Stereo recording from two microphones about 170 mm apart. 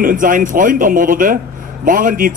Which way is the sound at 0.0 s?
50° right (ahead or behind).